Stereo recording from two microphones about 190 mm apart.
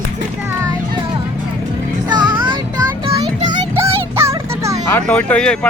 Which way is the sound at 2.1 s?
25° right (ahead or behind).